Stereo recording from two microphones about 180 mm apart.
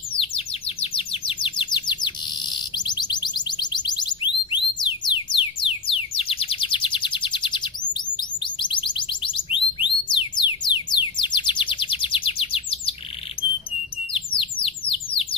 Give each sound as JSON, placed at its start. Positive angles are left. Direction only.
{"t": 0.2, "sound": "bird", "side_deg": 30}
{"t": 4.5, "sound": "music", "side_deg": 25}
{"t": 14.1, "sound": "bird", "side_deg": 30}